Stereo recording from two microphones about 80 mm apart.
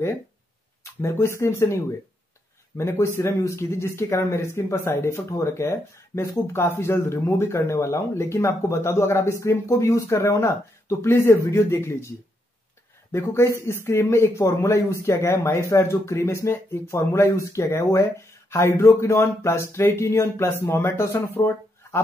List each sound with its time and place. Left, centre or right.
1.0 s speech: left
13.1 s speech: left